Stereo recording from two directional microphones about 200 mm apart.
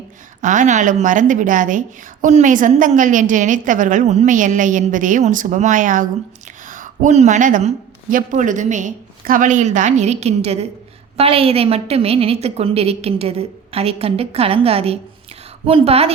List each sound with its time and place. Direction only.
0.4 s a woman's voice: 40° right (ahead or behind)